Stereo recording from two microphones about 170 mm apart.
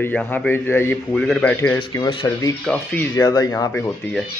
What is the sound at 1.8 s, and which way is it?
Speech, 25° left (ahead or behind).